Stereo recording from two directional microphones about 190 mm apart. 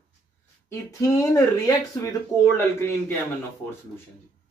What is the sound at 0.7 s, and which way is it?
Speech, 15° left (ahead or behind).